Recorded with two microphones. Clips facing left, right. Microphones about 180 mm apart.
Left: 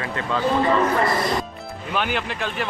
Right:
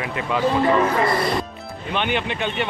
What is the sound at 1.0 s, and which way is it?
A man's voice, centre (ahead or behind).